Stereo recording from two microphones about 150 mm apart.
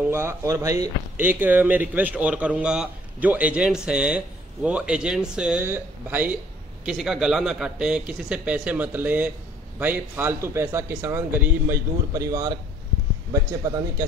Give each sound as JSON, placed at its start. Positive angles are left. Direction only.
{"t": 0.1, "sound": "speech", "side_deg": -15}